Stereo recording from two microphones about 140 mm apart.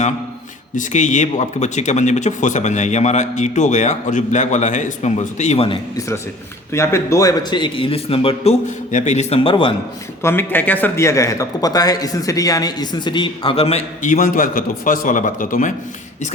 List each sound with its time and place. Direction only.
0.8 s speech: 60° left (ahead or behind)
6.7 s speech: 20° left (ahead or behind); by 8.5 s 40° left (ahead or behind)
8.9 s speech: 60° left (ahead or behind); by 9.7 s 40° left (ahead or behind)
10.2 s a man's voice: 15° left (ahead or behind); by 14.1 s 45° left (ahead or behind)
14.1 s a man's voice: 85° left